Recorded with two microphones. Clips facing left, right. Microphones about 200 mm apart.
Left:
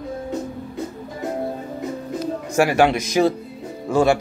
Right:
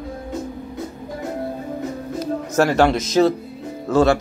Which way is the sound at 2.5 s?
15° left (ahead or behind).